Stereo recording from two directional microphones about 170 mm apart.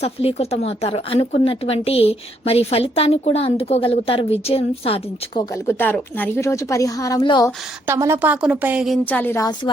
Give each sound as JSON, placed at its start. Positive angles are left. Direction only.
{"t": 0.0, "sound": "a woman's voice", "side_deg": 35}
{"t": 5.6, "sound": "a woman's voice", "side_deg": 10}
{"t": 7.9, "sound": "a woman's voice", "side_deg": -15}
{"t": 9.0, "sound": "a woman's voice", "side_deg": 10}